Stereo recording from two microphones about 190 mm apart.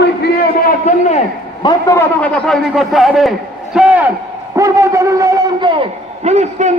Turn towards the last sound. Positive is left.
turn(degrees=-35)  # may be behind; listen again after turning